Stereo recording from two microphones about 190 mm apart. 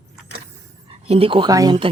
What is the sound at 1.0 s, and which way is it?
Speech, 30° right (ahead or behind).